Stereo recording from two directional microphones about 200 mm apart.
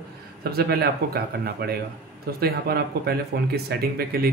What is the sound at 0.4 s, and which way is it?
A man's voice, 50° right (ahead or behind).